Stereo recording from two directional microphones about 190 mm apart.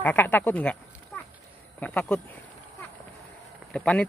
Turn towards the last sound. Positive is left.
turn(degrees=5)  # may be behind; listen again after turning